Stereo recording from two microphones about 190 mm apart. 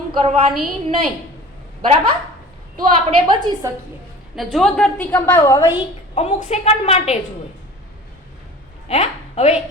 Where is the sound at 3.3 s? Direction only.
20° right (ahead or behind).